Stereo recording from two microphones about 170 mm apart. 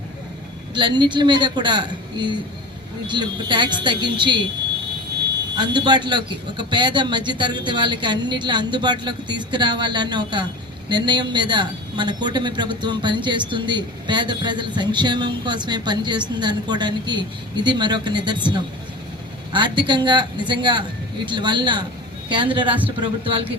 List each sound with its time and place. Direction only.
0.7 s a woman's voice: 25° right (ahead or behind)
5.5 s a woman's voice: 25° right (ahead or behind)
19.5 s a woman's voice: 25° right (ahead or behind)